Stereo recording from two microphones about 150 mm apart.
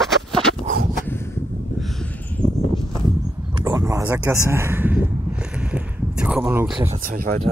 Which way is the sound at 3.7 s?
20° right (ahead or behind).